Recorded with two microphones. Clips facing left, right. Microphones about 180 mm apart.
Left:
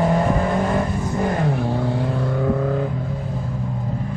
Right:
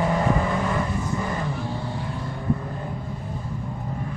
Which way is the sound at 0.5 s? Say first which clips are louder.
Left 4 dB; 45° left (ahead or behind).